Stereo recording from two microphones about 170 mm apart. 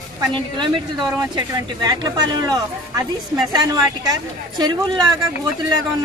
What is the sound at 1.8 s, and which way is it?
A woman's voice, 25° right (ahead or behind).